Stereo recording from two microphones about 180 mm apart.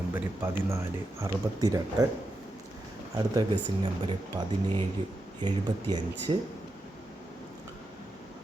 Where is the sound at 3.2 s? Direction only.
20° right (ahead or behind).